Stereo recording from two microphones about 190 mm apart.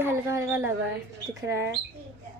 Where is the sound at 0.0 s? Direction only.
15° right (ahead or behind).